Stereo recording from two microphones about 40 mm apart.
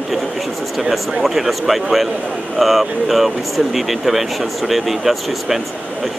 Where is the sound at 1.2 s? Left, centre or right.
Centre.